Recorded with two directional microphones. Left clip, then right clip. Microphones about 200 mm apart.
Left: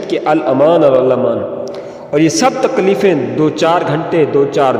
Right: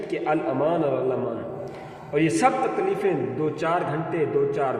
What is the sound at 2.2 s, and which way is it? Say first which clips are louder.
A man's voice: left 9 dB; 55° left (ahead or behind).